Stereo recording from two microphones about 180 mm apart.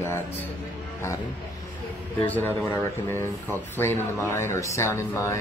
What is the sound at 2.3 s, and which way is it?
Speech, 10° left (ahead or behind).